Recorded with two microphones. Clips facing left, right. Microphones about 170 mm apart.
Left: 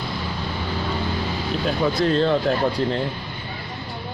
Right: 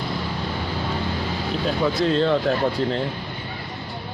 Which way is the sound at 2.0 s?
Centre (ahead or behind).